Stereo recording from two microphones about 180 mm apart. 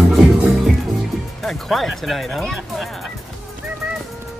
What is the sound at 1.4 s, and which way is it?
Speech, centre (ahead or behind).